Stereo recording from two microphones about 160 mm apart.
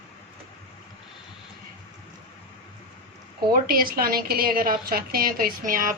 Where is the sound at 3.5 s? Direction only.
65° right (ahead or behind).